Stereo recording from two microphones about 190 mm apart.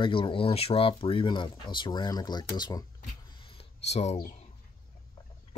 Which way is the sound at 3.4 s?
35° left (ahead or behind).